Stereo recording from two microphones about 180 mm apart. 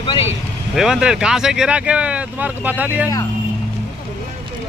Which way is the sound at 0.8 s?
5° right (ahead or behind).